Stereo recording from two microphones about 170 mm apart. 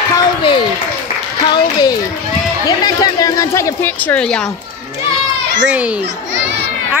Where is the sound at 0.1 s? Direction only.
25° left (ahead or behind).